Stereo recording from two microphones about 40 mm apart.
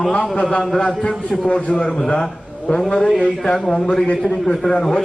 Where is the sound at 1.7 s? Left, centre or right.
Centre.